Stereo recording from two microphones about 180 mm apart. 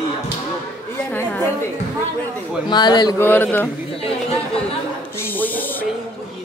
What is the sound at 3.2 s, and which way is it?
Speech, 10° left (ahead or behind).